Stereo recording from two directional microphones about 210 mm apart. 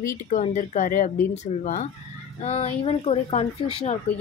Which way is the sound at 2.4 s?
30° left (ahead or behind).